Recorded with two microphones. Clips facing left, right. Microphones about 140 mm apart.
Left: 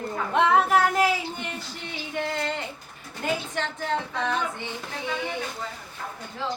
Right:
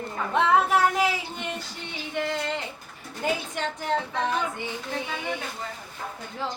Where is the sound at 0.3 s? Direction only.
Centre (ahead or behind).